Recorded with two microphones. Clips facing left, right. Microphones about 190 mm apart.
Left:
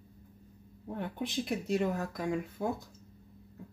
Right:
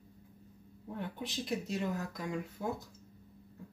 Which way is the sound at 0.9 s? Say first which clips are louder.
Left 5 dB; 55° left (ahead or behind).